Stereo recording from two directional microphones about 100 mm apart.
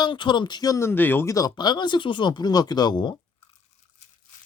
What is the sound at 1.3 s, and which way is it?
Speech, 40° left (ahead or behind).